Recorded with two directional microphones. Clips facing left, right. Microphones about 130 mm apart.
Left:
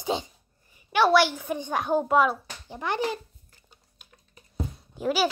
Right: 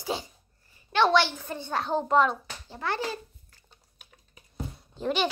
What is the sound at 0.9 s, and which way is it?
A child's voice, 10° left (ahead or behind).